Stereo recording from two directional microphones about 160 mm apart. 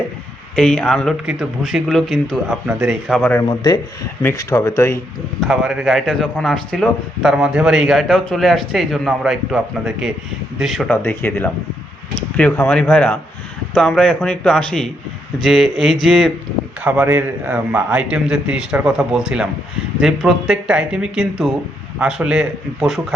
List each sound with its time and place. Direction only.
0.5 s a man's voice: 5° left (ahead or behind)
3.4 s speech: 25° left (ahead or behind)
4.2 s speech: 15° left (ahead or behind)
5.4 s a man's voice: centre (ahead or behind)
10.8 s a man's voice: 15° left (ahead or behind)
16.8 s a man's voice: 10° right (ahead or behind)